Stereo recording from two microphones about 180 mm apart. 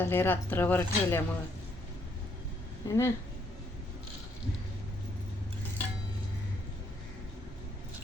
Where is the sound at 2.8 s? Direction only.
15° left (ahead or behind).